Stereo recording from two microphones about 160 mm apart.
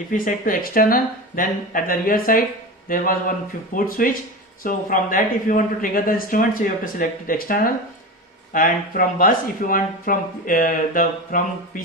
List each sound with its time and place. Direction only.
0.1 s speech: 55° left (ahead or behind)